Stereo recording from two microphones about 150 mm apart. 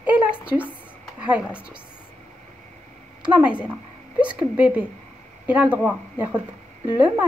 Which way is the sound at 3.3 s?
10° right (ahead or behind).